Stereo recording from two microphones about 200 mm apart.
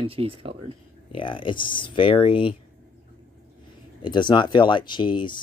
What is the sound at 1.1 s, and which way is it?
Speech, 25° left (ahead or behind).